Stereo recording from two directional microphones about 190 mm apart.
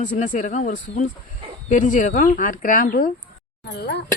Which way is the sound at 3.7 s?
65° left (ahead or behind).